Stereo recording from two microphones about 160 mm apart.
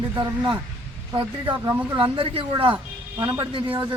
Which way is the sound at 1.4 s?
30° right (ahead or behind).